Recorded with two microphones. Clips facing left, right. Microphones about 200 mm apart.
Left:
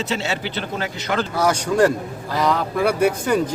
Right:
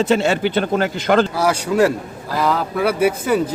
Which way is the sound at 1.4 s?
5° right (ahead or behind).